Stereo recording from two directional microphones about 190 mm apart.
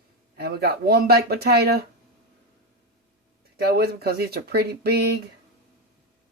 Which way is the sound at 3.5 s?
55° right (ahead or behind).